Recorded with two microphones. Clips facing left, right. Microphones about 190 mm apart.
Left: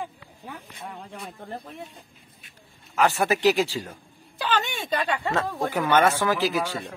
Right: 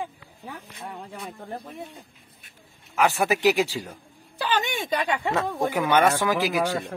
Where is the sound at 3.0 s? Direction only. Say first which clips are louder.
Even; 10° right (ahead or behind).